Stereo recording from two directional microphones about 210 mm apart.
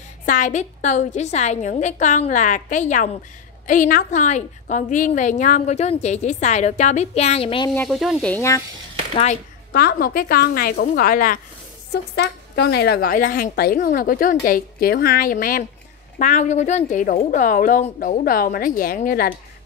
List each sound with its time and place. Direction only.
0.2 s a woman's voice: 35° left (ahead or behind)
7.7 s speech: 5° left (ahead or behind)
9.1 s a woman's voice: 30° left (ahead or behind)
9.7 s a woman's voice: 45° left (ahead or behind)